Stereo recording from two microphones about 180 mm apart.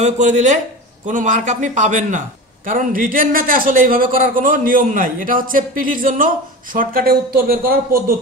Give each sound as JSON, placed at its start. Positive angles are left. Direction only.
{"t": 0.0, "sound": "a man's voice", "side_deg": -40}